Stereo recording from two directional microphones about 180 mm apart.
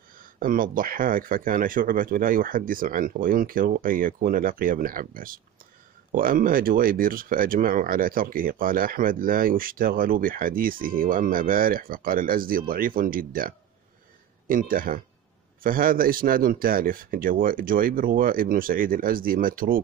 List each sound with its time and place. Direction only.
0.1 s speech: 50° right (ahead or behind)